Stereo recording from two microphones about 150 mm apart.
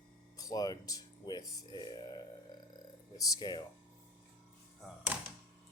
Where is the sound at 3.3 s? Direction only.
30° left (ahead or behind).